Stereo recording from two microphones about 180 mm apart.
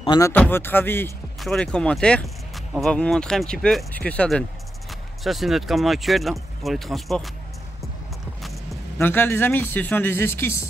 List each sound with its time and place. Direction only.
0.2 s speech: 10° left (ahead or behind)
8.9 s speech: 10° left (ahead or behind)